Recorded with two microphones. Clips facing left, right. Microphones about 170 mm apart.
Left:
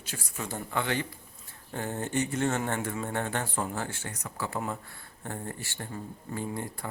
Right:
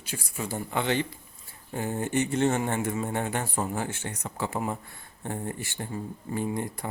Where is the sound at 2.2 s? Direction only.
25° right (ahead or behind).